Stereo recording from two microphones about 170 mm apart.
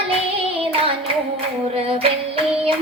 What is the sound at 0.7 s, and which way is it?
Hands, 30° right (ahead or behind).